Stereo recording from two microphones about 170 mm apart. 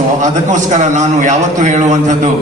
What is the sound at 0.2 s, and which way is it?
A man's voice, 45° right (ahead or behind).